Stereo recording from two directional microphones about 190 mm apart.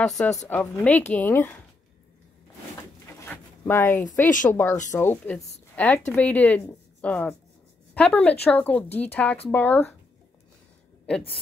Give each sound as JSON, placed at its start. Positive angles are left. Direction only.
{"t": 0.5, "sound": "speech", "side_deg": 10}
{"t": 3.1, "sound": "a sound", "side_deg": 10}
{"t": 4.0, "sound": "speech", "side_deg": 40}
{"t": 4.5, "sound": "speech", "side_deg": 10}